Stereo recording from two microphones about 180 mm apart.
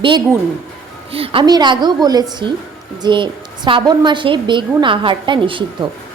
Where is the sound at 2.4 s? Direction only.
75° right (ahead or behind).